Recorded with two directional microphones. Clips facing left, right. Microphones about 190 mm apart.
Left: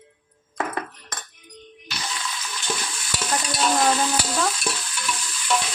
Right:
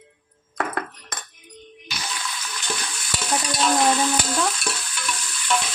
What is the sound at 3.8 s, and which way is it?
Speech, centre (ahead or behind).